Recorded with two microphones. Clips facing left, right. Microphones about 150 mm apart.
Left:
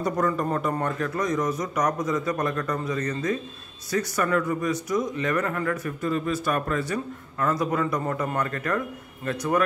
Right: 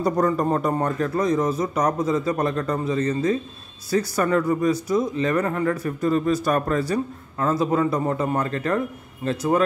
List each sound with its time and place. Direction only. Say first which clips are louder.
0.0 s a man's voice: right 4 dB; 35° right (ahead or behind)